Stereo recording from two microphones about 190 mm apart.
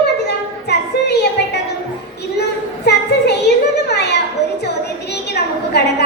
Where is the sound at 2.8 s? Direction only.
60° left (ahead or behind).